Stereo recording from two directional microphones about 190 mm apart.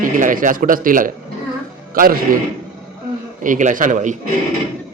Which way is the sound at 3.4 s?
45° right (ahead or behind).